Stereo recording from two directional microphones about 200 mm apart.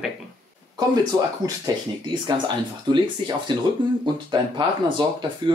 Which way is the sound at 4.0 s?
20° right (ahead or behind).